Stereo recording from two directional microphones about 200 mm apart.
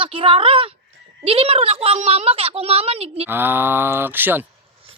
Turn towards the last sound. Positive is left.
turn(degrees=-10)  # may be behind; listen again after turning